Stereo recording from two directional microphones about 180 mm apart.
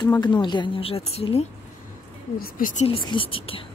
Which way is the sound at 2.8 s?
30° left (ahead or behind).